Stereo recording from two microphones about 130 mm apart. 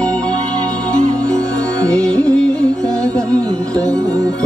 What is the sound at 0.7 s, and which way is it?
Music, 25° right (ahead or behind).